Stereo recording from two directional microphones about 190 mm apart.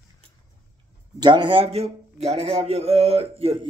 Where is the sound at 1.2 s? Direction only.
25° right (ahead or behind).